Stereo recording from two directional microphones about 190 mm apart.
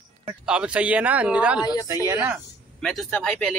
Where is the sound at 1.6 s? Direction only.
20° left (ahead or behind).